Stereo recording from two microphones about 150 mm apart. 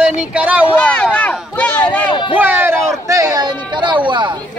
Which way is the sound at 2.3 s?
15° right (ahead or behind).